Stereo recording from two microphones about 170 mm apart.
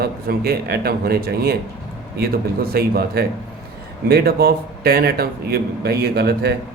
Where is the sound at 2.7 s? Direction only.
65° right (ahead or behind).